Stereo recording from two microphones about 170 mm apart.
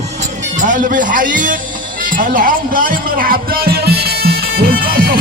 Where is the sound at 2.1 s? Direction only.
55° right (ahead or behind).